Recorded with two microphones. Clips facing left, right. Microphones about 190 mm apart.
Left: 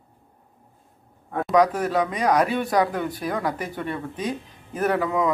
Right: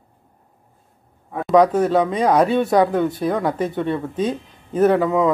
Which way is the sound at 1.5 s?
25° right (ahead or behind).